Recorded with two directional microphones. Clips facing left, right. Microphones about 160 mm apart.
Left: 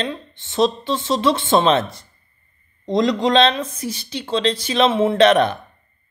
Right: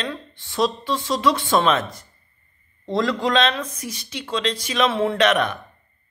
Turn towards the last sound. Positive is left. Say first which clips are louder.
# left 5 dB
turn(degrees=30)  # may be behind; listen again after turning